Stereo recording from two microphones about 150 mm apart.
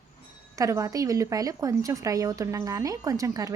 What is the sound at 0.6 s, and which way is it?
Speech, 20° right (ahead or behind).